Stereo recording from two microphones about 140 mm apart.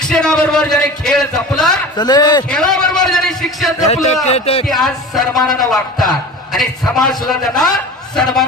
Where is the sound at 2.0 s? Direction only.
30° left (ahead or behind).